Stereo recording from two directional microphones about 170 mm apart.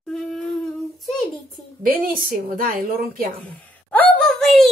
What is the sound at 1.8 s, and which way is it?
A woman's voice, 55° right (ahead or behind).